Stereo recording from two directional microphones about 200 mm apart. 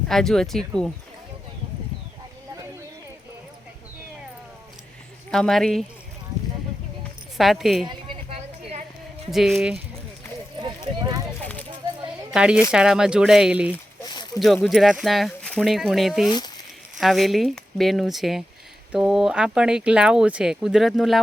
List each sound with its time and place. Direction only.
0.1 s speech: centre (ahead or behind)
5.3 s speech: centre (ahead or behind)
7.3 s speech: centre (ahead or behind)
7.9 s a sound: 25° right (ahead or behind)
9.3 s speech: centre (ahead or behind)
10.6 s clip-clop: 20° right (ahead or behind)
12.3 s speech: 5° right (ahead or behind)
14.0 s a sound: 20° left (ahead or behind)
14.3 s speech: centre (ahead or behind)